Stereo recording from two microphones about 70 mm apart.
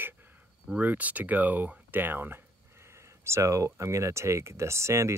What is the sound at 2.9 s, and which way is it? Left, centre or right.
Speech, right.